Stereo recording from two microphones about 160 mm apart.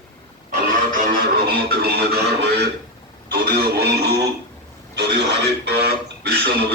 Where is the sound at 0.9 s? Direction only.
65° right (ahead or behind); by 2.6 s 90° right.